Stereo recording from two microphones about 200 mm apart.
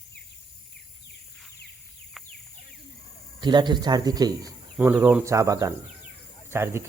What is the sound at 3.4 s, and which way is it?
Speech, 20° right (ahead or behind).